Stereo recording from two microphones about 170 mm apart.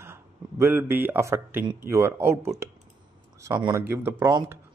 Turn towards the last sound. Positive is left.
turn(degrees=-15)  # may be behind; listen again after turning